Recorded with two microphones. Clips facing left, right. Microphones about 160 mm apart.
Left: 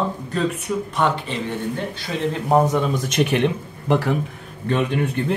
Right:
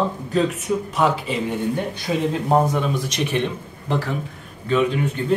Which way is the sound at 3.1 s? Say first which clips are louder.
Left 4 dB; 65° left (ahead or behind).